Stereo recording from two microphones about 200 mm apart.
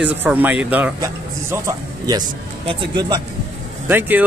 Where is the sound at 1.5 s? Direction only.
15° right (ahead or behind).